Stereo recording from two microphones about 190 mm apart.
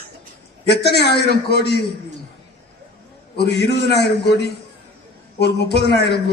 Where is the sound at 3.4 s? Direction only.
60° left (ahead or behind).